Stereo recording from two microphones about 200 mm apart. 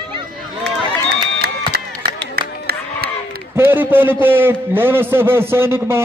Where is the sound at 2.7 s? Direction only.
50° right (ahead or behind).